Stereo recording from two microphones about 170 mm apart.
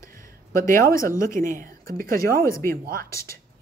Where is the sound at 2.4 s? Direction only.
15° left (ahead or behind).